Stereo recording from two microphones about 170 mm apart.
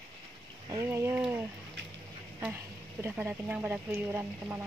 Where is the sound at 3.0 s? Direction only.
10° right (ahead or behind).